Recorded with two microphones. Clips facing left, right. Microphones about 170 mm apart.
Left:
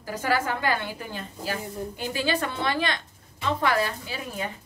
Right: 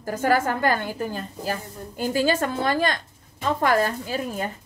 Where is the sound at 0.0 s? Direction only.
50° right (ahead or behind).